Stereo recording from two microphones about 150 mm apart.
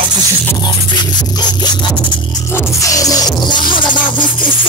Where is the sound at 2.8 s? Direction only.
20° left (ahead or behind).